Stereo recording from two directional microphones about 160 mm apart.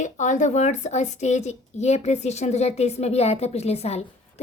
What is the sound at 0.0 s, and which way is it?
A woman's voice, 50° left (ahead or behind).